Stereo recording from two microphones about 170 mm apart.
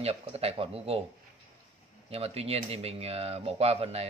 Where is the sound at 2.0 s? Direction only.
35° right (ahead or behind).